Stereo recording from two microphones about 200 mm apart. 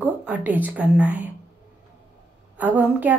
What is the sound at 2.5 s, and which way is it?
Speech, 10° right (ahead or behind).